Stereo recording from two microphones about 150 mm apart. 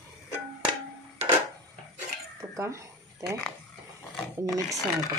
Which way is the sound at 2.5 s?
20° right (ahead or behind).